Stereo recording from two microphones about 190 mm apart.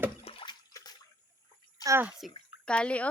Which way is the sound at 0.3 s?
30° left (ahead or behind).